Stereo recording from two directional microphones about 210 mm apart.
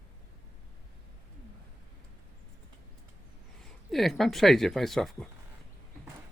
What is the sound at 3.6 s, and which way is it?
Speech, centre (ahead or behind).